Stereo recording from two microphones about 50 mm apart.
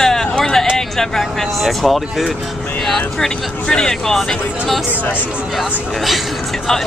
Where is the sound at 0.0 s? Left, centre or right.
Centre.